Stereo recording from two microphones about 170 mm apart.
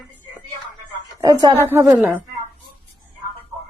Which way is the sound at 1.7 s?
10° right (ahead or behind).